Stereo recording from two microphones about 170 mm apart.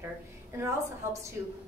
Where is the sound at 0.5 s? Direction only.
15° right (ahead or behind).